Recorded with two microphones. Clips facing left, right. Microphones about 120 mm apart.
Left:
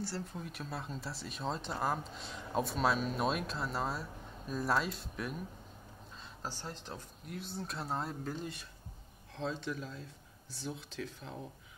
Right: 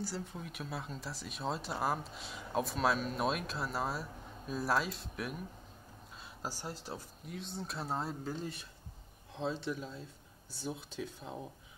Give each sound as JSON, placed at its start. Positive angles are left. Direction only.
{"t": 0.0, "sound": "speech", "side_deg": 0}
{"t": 6.4, "sound": "speech", "side_deg": -10}